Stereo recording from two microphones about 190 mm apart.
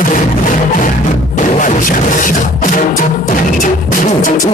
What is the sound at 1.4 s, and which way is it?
Music, 45° left (ahead or behind).